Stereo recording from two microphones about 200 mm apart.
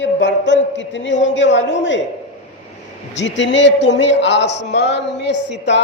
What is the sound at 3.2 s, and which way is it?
A man's voice, 65° left (ahead or behind).